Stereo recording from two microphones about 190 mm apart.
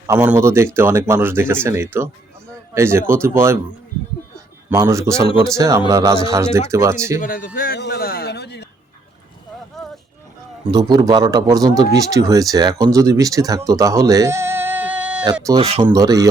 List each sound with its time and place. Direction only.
0.1 s speech: 10° right (ahead or behind)
4.7 s speech: 15° right (ahead or behind)
7.2 s a man's voice: 45° left (ahead or behind)
10.7 s speech: 20° right (ahead or behind)
15.6 s speech: 30° right (ahead or behind)
15.9 s speech: 20° right (ahead or behind)